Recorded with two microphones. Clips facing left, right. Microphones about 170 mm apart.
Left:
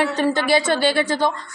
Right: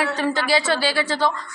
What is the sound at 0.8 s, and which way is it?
Speech, 55° left (ahead or behind).